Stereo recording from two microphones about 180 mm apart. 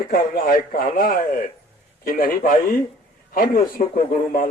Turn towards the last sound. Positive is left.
turn(degrees=50)  # may be behind; listen again after turning